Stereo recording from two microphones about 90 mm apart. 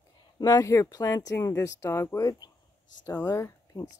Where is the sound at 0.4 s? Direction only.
40° left (ahead or behind).